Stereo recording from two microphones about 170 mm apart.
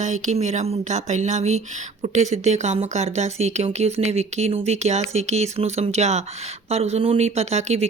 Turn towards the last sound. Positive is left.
turn(degrees=-40)  # may be behind; listen again after turning